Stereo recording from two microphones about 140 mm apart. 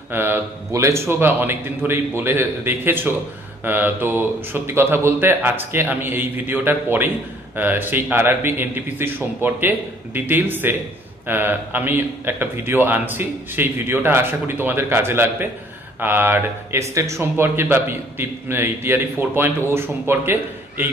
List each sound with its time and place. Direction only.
0.1 s speech: 15° right (ahead or behind)